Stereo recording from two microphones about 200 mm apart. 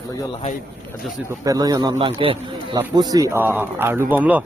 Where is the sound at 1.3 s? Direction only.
20° right (ahead or behind).